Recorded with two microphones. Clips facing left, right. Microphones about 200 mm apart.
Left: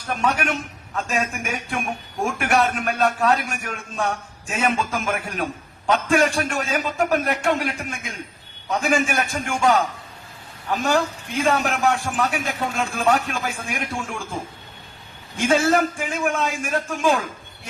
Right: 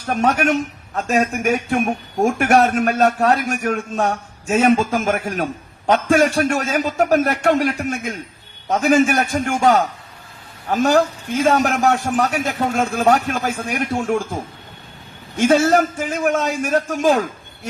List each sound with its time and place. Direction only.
0.0 s a man's voice: 40° right (ahead or behind)
15.4 s a man's voice: 40° right (ahead or behind)